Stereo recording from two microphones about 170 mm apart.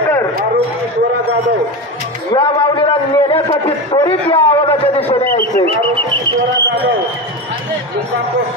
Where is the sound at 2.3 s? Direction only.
30° left (ahead or behind).